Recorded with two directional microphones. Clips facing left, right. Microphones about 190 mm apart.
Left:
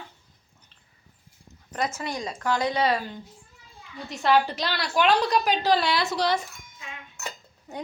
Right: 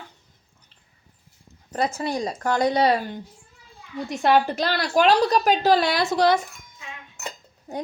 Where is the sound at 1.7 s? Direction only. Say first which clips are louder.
Right 5 dB; 35° right (ahead or behind).